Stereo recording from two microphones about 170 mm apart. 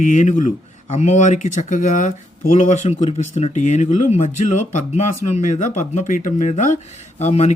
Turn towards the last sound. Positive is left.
turn(degrees=40)  # may be behind; listen again after turning